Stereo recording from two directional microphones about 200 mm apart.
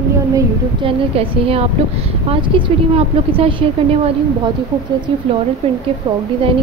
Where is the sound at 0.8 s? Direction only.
30° right (ahead or behind).